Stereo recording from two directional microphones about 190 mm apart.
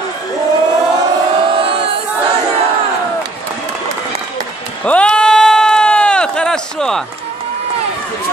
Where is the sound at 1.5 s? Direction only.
30° right (ahead or behind).